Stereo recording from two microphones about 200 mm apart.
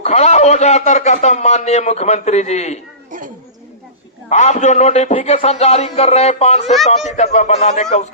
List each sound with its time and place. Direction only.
0.0 s a man's voice: 35° left (ahead or behind)
4.3 s a man's voice: 35° left (ahead or behind)